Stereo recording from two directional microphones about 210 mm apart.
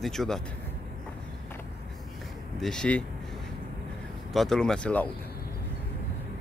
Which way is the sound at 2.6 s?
5° left (ahead or behind).